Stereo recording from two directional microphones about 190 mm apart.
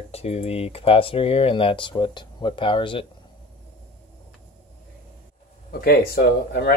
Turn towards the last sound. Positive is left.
turn(degrees=55)  # may be behind; listen again after turning